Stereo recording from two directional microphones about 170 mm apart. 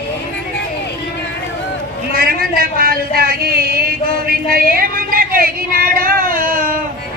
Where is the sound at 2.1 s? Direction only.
60° right (ahead or behind).